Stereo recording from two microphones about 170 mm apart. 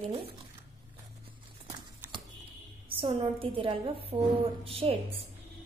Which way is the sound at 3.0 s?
30° right (ahead or behind).